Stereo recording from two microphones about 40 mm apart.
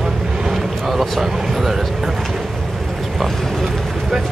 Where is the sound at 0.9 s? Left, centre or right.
Centre.